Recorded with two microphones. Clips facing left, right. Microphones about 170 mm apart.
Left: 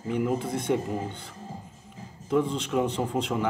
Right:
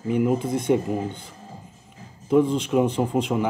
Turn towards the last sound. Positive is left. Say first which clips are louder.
# right 5 dB
turn(degrees=-15)  # may be behind; listen again after turning